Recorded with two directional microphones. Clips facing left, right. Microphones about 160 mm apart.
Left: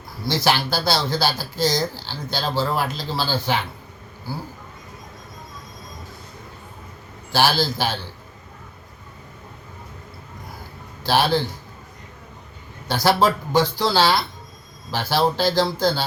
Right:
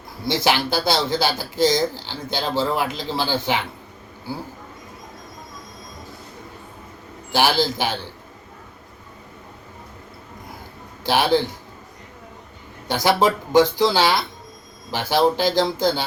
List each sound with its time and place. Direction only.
0.3 s speech: 15° right (ahead or behind)
7.3 s speech: 20° right (ahead or behind)
11.0 s a man's voice: 15° right (ahead or behind)
12.9 s speech: 15° right (ahead or behind)